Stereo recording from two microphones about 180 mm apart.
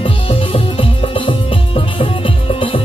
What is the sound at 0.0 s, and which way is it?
Music, 30° left (ahead or behind).